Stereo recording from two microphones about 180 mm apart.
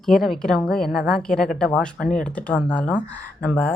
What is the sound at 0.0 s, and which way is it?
A woman's voice, centre (ahead or behind).